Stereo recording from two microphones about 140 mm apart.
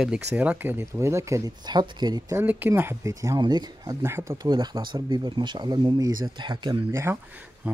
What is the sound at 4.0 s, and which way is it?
Speech, 20° right (ahead or behind).